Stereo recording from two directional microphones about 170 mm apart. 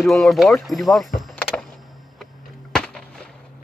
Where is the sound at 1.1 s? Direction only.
5° left (ahead or behind).